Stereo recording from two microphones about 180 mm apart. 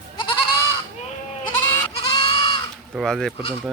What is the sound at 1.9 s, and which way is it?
Goat, 25° left (ahead or behind).